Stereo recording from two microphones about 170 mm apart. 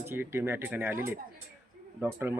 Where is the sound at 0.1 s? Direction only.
15° right (ahead or behind).